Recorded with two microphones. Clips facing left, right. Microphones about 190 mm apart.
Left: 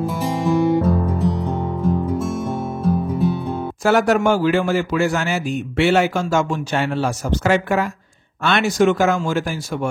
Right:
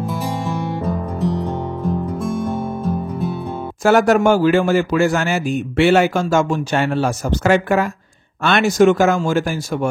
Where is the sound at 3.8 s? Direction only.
50° right (ahead or behind).